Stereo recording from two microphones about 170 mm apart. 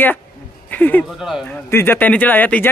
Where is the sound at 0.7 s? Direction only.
10° left (ahead or behind).